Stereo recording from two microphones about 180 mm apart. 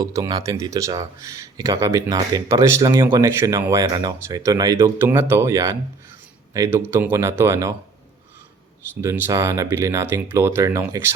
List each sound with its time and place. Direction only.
0.0 s speech: 20° right (ahead or behind)
9.0 s speech: 15° right (ahead or behind)